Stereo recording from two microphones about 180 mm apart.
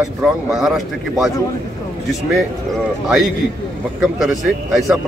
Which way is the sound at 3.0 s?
5° right (ahead or behind).